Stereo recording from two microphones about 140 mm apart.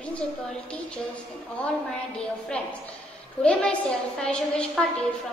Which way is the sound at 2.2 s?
5° left (ahead or behind).